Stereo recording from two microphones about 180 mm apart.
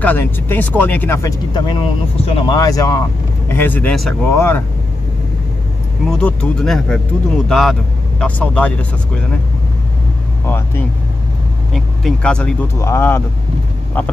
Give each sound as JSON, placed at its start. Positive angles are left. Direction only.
{"t": 0.0, "sound": "speech", "side_deg": 10}
{"t": 1.5, "sound": "speech", "side_deg": 30}
{"t": 2.5, "sound": "speech", "side_deg": 20}
{"t": 6.0, "sound": "speech", "side_deg": 5}
{"t": 10.4, "sound": "speech", "side_deg": 10}